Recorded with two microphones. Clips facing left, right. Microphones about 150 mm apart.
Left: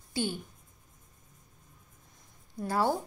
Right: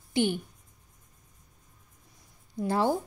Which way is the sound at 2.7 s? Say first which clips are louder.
Right 2 dB; 20° right (ahead or behind).